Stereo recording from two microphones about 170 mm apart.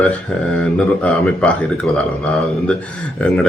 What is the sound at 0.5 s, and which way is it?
Speech, 5° left (ahead or behind).